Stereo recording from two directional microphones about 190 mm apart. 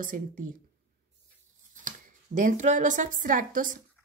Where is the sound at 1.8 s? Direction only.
40° right (ahead or behind).